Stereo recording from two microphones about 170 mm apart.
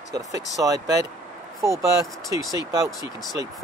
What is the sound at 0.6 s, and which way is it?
Speech, 15° right (ahead or behind).